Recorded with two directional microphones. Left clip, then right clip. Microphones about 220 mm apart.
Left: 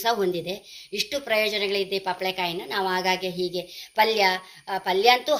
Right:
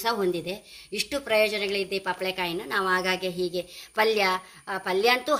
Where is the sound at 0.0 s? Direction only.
50° right (ahead or behind).